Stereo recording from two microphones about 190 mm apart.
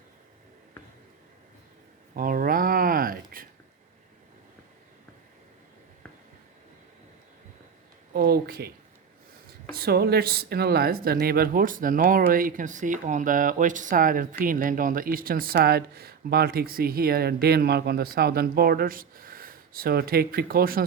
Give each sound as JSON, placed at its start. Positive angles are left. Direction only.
{"t": 2.1, "sound": "a sound", "side_deg": -50}
{"t": 8.1, "sound": "speech", "side_deg": -50}
{"t": 9.7, "sound": "speech", "side_deg": -55}